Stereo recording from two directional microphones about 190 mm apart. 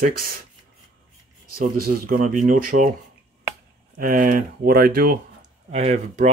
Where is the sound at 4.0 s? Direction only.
45° right (ahead or behind).